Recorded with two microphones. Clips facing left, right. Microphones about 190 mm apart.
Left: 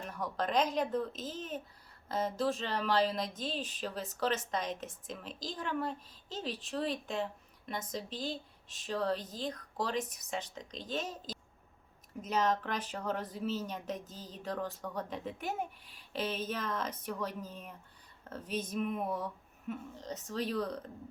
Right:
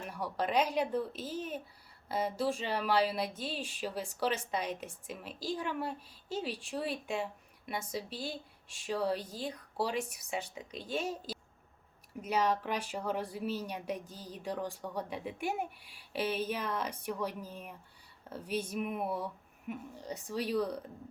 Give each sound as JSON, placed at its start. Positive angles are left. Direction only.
{"t": 0.1, "sound": "speech", "side_deg": -10}